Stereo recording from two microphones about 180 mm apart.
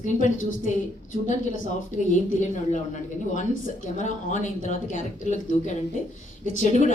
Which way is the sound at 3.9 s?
35° left (ahead or behind).